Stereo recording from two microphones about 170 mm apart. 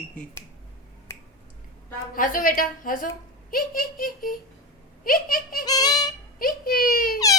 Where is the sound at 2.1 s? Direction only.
55° left (ahead or behind).